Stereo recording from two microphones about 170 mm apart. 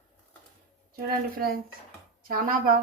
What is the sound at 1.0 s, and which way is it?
A woman's voice, 65° right (ahead or behind).